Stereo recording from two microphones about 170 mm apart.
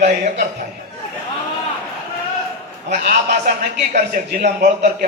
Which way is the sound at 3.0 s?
70° right (ahead or behind).